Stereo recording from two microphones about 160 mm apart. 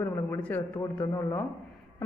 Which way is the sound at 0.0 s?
15° left (ahead or behind).